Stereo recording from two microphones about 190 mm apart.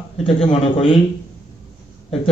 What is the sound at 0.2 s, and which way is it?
Speech, 30° left (ahead or behind).